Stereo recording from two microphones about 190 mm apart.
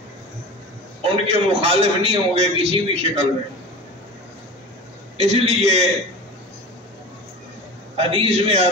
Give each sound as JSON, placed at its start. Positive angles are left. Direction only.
{"t": 1.0, "sound": "a man's voice", "side_deg": -30}
{"t": 5.1, "sound": "a man's voice", "side_deg": -35}
{"t": 7.9, "sound": "a man's voice", "side_deg": -30}